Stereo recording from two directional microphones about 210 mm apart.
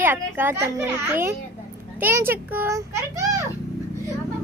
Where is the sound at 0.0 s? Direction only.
10° right (ahead or behind).